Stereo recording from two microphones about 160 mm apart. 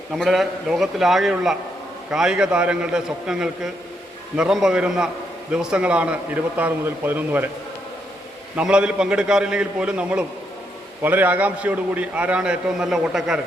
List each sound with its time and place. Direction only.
0.1 s a man's voice: centre (ahead or behind)
8.5 s a man's voice: 5° right (ahead or behind)